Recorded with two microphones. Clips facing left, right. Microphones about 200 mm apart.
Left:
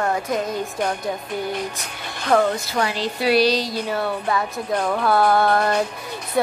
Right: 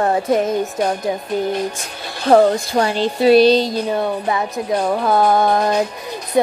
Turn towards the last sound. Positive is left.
turn(degrees=-15)  # may be behind; listen again after turning